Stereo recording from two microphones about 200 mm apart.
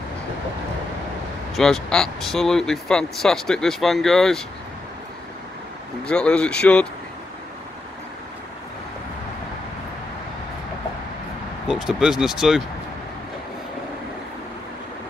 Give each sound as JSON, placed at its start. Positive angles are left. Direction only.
{"t": 1.5, "sound": "speech", "side_deg": 0}
{"t": 6.0, "sound": "speech", "side_deg": 5}
{"t": 11.6, "sound": "speech", "side_deg": 0}